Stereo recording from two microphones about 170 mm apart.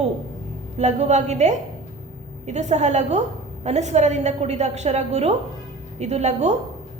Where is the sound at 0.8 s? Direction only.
40° right (ahead or behind).